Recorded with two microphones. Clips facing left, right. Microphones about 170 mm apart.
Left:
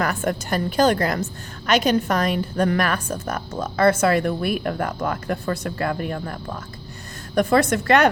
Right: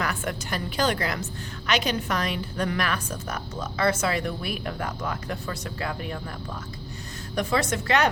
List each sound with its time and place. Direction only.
0.0 s a woman's voice: 45° left (ahead or behind)